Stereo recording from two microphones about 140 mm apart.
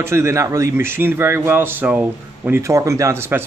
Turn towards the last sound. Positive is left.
turn(degrees=-20)  # may be behind; listen again after turning